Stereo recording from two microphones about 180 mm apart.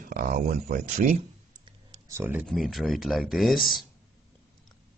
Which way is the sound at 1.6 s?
20° right (ahead or behind).